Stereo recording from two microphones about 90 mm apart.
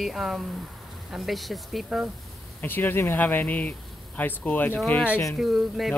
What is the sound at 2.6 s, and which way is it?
Speech, 20° left (ahead or behind).